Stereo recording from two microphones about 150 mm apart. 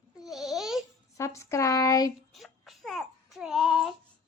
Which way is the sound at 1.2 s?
20° left (ahead or behind).